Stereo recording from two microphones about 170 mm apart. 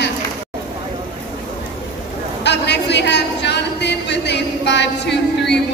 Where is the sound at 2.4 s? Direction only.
90° left.